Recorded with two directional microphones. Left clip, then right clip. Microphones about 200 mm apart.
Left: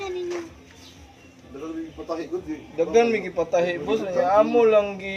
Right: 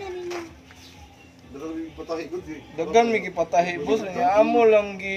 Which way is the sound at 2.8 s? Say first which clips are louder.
Even; 45° right (ahead or behind).